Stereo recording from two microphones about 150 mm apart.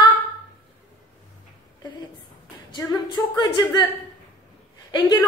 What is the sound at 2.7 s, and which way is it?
Speech, 30° left (ahead or behind).